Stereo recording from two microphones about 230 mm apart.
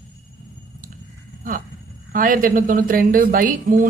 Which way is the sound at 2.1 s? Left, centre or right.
Right.